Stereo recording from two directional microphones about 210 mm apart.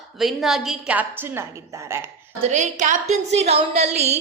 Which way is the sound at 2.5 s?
35° right (ahead or behind).